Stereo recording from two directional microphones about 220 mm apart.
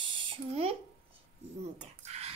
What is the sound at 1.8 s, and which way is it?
Speech, 30° right (ahead or behind).